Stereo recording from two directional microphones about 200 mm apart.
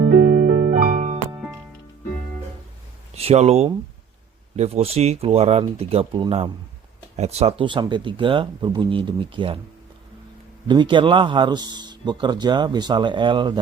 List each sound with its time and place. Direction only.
0.1 s music: 45° right (ahead or behind)
1.4 s music: 5° right (ahead or behind)
3.2 s a man's voice: 30° right (ahead or behind)
10.7 s a man's voice: 25° right (ahead or behind)